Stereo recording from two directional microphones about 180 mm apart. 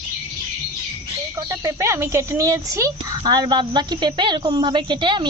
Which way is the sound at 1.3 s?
15° right (ahead or behind).